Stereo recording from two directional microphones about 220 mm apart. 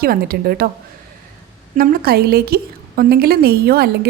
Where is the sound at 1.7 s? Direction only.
40° right (ahead or behind).